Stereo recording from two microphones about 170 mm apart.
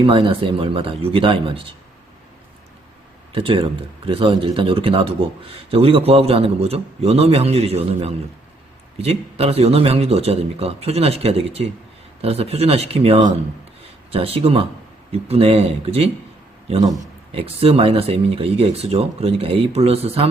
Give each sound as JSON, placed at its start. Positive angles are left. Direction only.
{"t": 0.0, "sound": "speech", "side_deg": -30}
{"t": 3.3, "sound": "speech", "side_deg": -30}
{"t": 17.3, "sound": "speech", "side_deg": -35}